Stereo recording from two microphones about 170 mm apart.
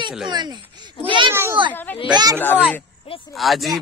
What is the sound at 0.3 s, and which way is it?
Speech, 25° right (ahead or behind).